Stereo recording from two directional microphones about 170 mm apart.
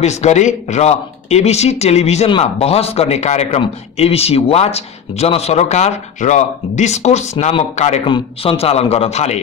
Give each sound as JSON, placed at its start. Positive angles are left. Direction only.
{"t": 0.0, "sound": "speech", "side_deg": 40}